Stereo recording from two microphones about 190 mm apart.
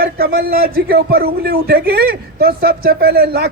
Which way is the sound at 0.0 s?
50° right (ahead or behind).